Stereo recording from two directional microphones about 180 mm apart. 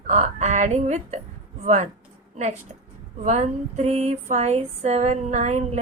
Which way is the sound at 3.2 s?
40° right (ahead or behind).